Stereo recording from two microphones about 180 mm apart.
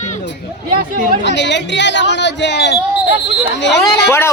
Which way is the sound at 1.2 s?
75° left (ahead or behind).